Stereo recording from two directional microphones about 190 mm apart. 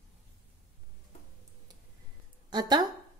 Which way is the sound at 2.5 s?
20° right (ahead or behind).